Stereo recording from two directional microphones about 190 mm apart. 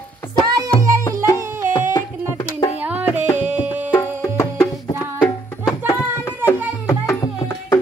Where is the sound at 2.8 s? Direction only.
10° right (ahead or behind).